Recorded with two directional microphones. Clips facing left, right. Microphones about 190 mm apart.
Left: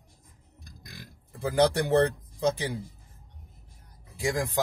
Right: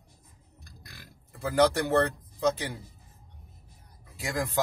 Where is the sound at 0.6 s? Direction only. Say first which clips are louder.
Left 4 dB; 15° left (ahead or behind).